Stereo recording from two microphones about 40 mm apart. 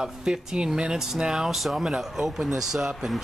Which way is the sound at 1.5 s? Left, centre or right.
Centre.